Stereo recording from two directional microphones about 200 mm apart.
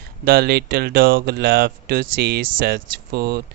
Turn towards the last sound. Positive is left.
turn(degrees=-50)  # may be behind; listen again after turning